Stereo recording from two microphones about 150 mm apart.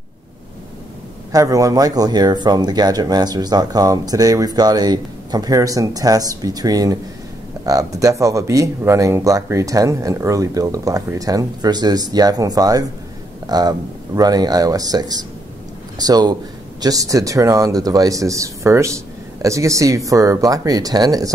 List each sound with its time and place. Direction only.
1.3 s speech: 20° right (ahead or behind)